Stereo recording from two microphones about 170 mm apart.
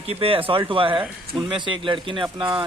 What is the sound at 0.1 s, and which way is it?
Speech, 35° right (ahead or behind).